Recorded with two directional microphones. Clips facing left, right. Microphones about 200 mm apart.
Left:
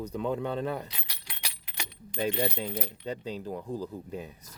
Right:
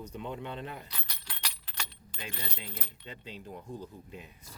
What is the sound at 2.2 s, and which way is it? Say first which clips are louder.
Speech: left 14 dB; 60° left (ahead or behind).